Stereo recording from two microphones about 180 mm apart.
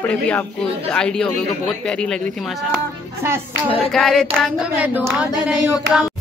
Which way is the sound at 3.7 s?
Centre (ahead or behind).